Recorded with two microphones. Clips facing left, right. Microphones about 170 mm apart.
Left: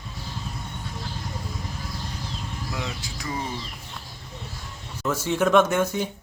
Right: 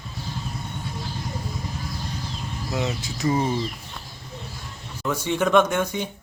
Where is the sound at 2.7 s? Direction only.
25° right (ahead or behind).